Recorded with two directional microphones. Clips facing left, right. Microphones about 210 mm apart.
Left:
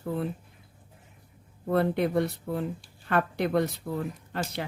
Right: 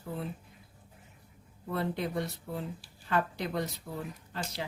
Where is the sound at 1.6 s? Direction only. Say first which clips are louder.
Left 8 dB; 60° left (ahead or behind).